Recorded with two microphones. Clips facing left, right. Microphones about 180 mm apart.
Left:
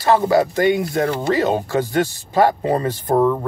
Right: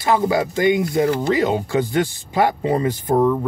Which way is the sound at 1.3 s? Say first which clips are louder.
Even; 15° right (ahead or behind).